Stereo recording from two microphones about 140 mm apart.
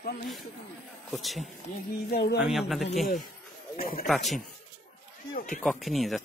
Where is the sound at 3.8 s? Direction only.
90° left.